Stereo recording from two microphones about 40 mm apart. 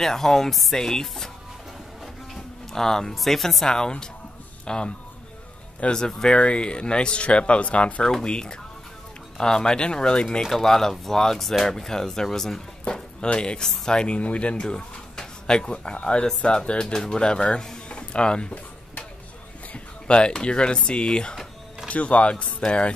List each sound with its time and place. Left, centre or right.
0.0 s speech: centre
2.3 s a sound: centre
3.2 s speech: centre
3.6 s speech: centre
5.9 s speech: centre
8.1 s speech: centre
10.4 s speech: centre
12.8 s speech: left
14.6 s speech: centre
17.8 s a sound: left
19.7 s speech: left
21.8 s speech: left